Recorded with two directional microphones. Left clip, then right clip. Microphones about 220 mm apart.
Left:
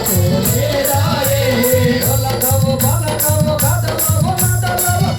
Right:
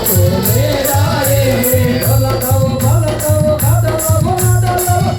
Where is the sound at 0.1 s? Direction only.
30° left (ahead or behind).